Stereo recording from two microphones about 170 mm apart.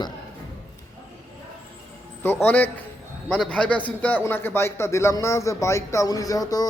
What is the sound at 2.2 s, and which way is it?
A man's voice, 15° left (ahead or behind).